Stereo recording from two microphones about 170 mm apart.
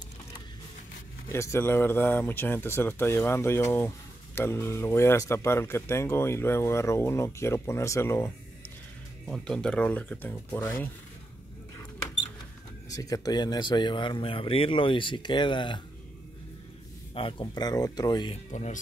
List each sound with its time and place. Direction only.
1.3 s speech: 15° left (ahead or behind)
9.3 s speech: 5° left (ahead or behind)
12.9 s speech: 20° left (ahead or behind)
17.1 s speech: 30° left (ahead or behind)
18.5 s speech: 45° left (ahead or behind)